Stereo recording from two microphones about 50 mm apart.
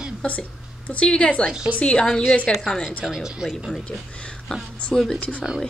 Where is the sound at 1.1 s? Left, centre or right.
Left.